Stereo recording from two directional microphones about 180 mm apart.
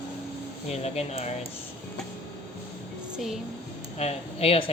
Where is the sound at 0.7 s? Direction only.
35° left (ahead or behind).